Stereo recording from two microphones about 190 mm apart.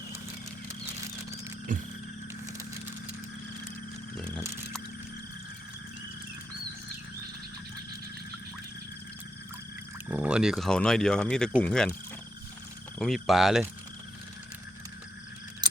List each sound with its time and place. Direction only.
1.7 s a sound: 45° right (ahead or behind)
10.1 s speech: 5° right (ahead or behind)
13.0 s speech: centre (ahead or behind)